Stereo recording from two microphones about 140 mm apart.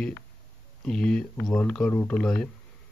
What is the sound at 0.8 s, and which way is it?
Speech, 5° left (ahead or behind).